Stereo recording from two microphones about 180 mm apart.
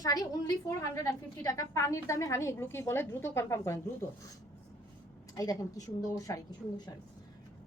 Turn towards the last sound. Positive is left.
turn(degrees=20)  # may be behind; listen again after turning